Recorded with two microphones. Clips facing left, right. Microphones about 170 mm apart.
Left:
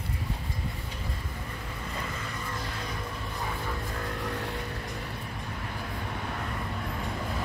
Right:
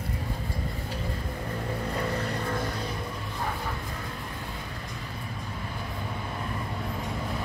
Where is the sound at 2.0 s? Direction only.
65° right (ahead or behind).